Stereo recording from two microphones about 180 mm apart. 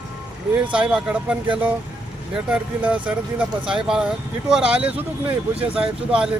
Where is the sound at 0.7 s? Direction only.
5° right (ahead or behind).